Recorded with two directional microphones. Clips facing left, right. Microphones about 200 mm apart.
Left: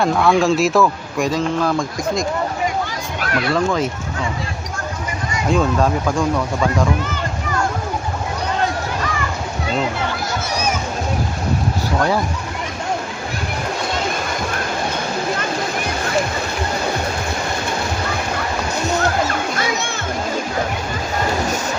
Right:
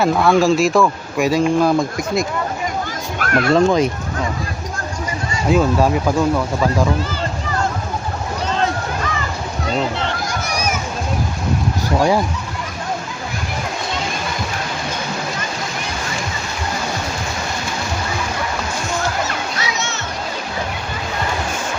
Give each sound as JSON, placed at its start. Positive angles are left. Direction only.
{"t": 0.0, "sound": "speech", "side_deg": 0}
{"t": 3.2, "sound": "children playing", "side_deg": -50}
{"t": 3.5, "sound": "speech", "side_deg": -20}
{"t": 5.5, "sound": "speech", "side_deg": -5}
{"t": 11.9, "sound": "speech", "side_deg": -10}
{"t": 19.3, "sound": "music", "side_deg": 50}